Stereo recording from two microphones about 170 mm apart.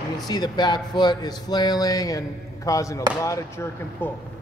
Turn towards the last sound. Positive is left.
turn(degrees=10)  # may be behind; listen again after turning